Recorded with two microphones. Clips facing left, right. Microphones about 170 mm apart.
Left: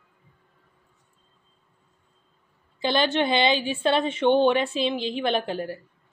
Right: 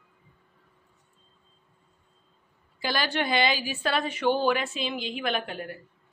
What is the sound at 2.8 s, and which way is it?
A woman's voice, 25° left (ahead or behind).